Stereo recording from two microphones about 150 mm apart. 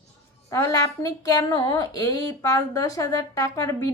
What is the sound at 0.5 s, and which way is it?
A woman's voice, 25° left (ahead or behind).